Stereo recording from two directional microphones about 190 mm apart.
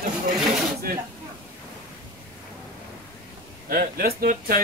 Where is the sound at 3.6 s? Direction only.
50° right (ahead or behind).